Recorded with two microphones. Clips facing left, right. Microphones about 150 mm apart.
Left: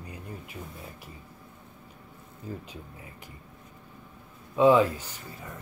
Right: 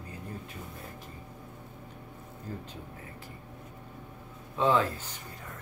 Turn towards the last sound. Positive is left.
turn(degrees=10)  # may be behind; listen again after turning